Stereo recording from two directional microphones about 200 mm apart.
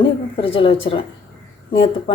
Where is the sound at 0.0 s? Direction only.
25° left (ahead or behind).